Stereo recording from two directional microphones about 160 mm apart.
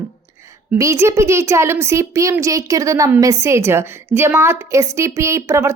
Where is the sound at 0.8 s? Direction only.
15° right (ahead or behind).